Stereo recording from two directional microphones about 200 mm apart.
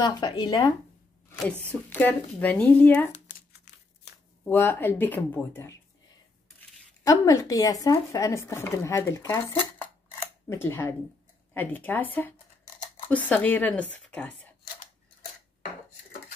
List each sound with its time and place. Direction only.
0.0 s speech: 20° left (ahead or behind)
1.9 s speech: 10° left (ahead or behind)
3.3 s crumpling: 45° left (ahead or behind)
4.5 s speech: 10° left (ahead or behind)
7.1 s speech: 15° left (ahead or behind)